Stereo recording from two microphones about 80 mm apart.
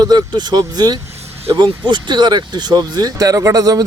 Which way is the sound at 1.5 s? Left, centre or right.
Right.